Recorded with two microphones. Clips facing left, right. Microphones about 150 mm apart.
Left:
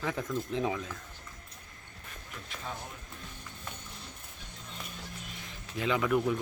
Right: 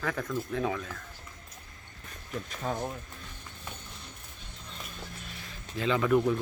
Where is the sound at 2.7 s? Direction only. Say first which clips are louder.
Right 8 dB; 45° right (ahead or behind).